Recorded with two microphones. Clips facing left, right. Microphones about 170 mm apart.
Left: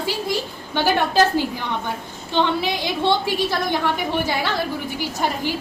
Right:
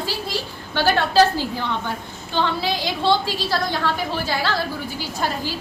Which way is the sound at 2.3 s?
20° left (ahead or behind).